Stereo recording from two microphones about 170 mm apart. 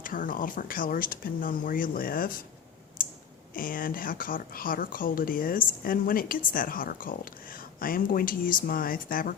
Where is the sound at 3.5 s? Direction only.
55° left (ahead or behind).